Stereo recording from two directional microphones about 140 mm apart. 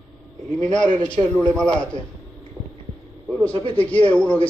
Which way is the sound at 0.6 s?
10° left (ahead or behind).